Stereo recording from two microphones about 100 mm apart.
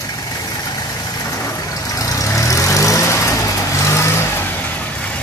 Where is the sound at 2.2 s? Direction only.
30° left (ahead or behind).